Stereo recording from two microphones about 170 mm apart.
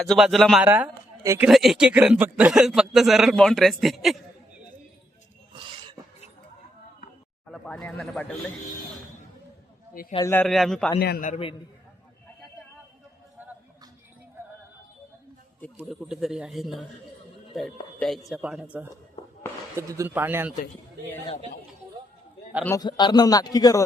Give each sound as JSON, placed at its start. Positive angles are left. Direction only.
{"t": 0.0, "sound": "speech", "side_deg": 0}
{"t": 1.2, "sound": "speech", "side_deg": -20}
{"t": 1.5, "sound": "speech", "side_deg": 0}
{"t": 7.4, "sound": "speech", "side_deg": 5}
{"t": 10.2, "sound": "a man's voice", "side_deg": 15}
{"t": 10.4, "sound": "speech", "side_deg": 0}
{"t": 11.0, "sound": "a man's voice", "side_deg": 70}
{"t": 15.9, "sound": "speech", "side_deg": -5}
{"t": 18.0, "sound": "speech", "side_deg": 0}
{"t": 19.7, "sound": "speech", "side_deg": -15}
{"t": 22.6, "sound": "a man's voice", "side_deg": 20}